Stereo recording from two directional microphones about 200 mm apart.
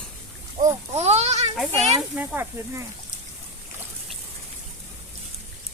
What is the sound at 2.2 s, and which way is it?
Speech, 10° right (ahead or behind).